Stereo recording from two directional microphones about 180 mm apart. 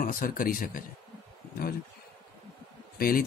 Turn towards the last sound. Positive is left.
turn(degrees=55)  # may be behind; listen again after turning